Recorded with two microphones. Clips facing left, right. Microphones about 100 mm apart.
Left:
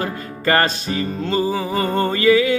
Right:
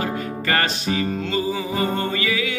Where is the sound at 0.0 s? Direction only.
40° left (ahead or behind).